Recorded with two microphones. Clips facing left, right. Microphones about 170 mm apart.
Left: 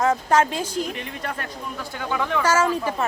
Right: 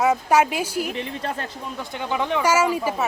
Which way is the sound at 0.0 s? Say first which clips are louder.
Right 1 dB; 10° right (ahead or behind).